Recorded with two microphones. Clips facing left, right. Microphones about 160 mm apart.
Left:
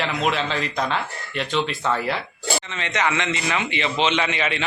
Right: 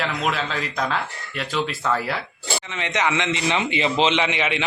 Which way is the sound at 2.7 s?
15° right (ahead or behind).